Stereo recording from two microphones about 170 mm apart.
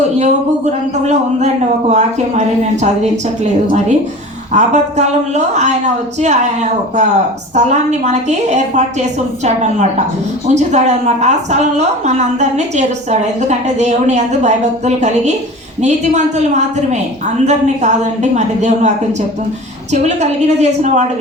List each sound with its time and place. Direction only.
0.2 s a woman's voice: 45° right (ahead or behind)
4.5 s a woman's voice: 40° right (ahead or behind)
19.9 s a woman's voice: 45° right (ahead or behind)